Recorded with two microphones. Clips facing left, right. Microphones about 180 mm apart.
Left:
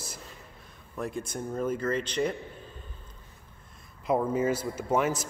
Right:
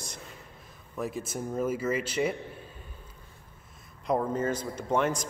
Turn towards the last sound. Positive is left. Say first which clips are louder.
# left 1 dB
turn(degrees=5)  # may be behind; listen again after turning